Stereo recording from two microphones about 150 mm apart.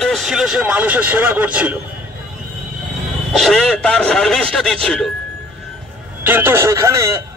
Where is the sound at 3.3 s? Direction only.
Centre (ahead or behind).